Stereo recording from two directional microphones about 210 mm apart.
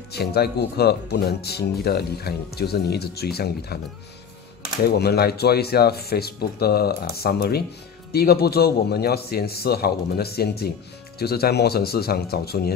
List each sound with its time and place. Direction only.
0.1 s speech: 50° left (ahead or behind)
4.8 s speech: 50° left (ahead or behind)